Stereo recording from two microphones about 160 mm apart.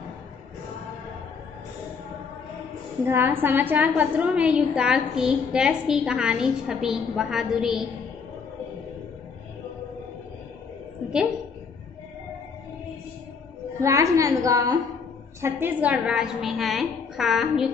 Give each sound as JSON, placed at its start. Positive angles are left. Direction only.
{"t": 3.1, "sound": "a woman's voice", "side_deg": -15}
{"t": 13.7, "sound": "a woman's voice", "side_deg": -20}